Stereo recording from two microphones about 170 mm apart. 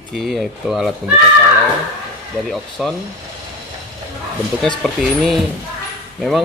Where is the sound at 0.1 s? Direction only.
Centre (ahead or behind).